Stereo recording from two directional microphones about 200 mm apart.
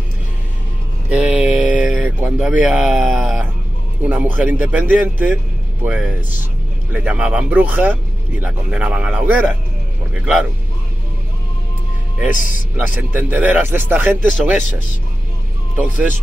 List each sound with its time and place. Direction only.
1.1 s mantra: 5° right (ahead or behind)
4.0 s speech: 10° right (ahead or behind)
12.3 s speech: 40° left (ahead or behind)
12.7 s speech: 10° right (ahead or behind)